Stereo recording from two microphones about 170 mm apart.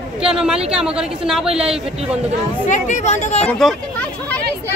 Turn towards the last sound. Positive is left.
turn(degrees=45)  # may be behind; listen again after turning